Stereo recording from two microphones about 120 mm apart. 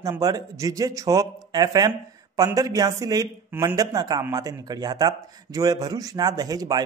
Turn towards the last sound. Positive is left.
turn(degrees=-35)  # may be behind; listen again after turning